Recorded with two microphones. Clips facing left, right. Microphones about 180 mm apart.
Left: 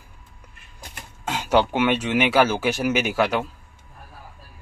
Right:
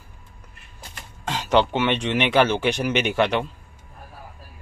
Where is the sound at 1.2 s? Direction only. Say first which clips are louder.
Even; 10° left (ahead or behind).